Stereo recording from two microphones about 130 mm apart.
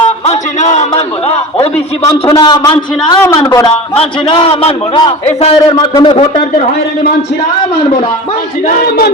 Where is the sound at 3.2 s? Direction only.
25° left (ahead or behind).